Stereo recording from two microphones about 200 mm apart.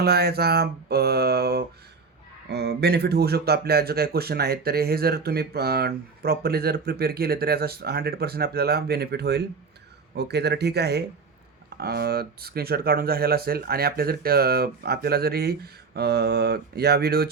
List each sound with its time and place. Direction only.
0.0 s speech: 50° right (ahead or behind)